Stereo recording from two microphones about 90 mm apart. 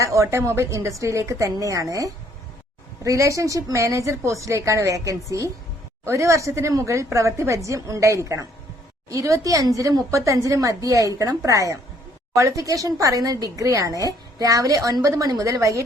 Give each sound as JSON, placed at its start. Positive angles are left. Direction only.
{"t": 0.0, "sound": "speech", "side_deg": -35}